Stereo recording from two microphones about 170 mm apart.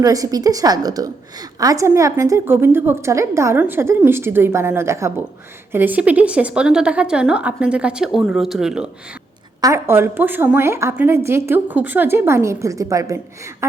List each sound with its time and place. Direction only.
0.0 s a woman's voice: 20° right (ahead or behind); by 8.9 s 5° right (ahead or behind)
9.6 s a woman's voice: 20° right (ahead or behind)